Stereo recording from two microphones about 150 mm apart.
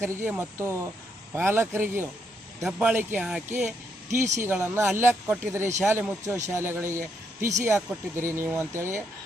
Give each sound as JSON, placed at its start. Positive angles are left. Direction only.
{"t": 0.0, "sound": "speech", "side_deg": -15}
{"t": 4.2, "sound": "speech", "side_deg": -55}
{"t": 4.4, "sound": "speech", "side_deg": -15}